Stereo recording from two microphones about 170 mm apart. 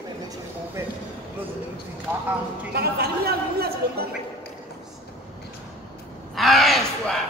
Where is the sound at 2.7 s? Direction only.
65° right (ahead or behind).